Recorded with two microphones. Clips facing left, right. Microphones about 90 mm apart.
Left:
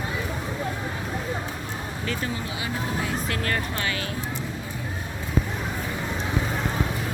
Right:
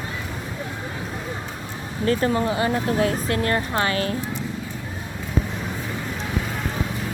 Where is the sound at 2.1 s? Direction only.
45° right (ahead or behind).